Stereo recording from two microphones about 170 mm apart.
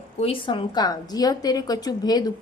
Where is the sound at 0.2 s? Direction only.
30° left (ahead or behind).